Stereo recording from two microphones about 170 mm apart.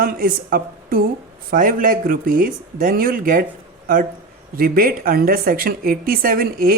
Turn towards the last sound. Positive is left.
turn(degrees=-60)  # may be behind; listen again after turning